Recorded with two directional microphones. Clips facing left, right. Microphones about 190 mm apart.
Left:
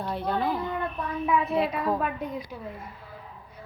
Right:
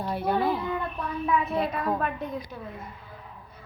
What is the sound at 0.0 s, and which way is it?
Speech, 10° right (ahead or behind).